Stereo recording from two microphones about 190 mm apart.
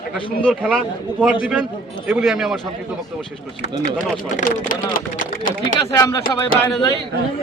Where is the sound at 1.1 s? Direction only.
5° right (ahead or behind).